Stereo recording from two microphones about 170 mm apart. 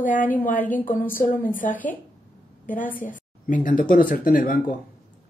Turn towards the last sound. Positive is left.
turn(degrees=55)  # may be behind; listen again after turning